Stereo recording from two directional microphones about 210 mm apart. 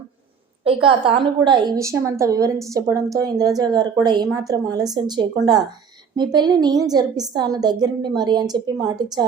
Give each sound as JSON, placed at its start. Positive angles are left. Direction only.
{"t": 0.6, "sound": "a woman's voice", "side_deg": -25}